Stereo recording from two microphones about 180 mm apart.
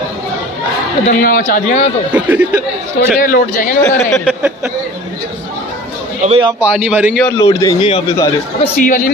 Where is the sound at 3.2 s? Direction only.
50° left (ahead or behind).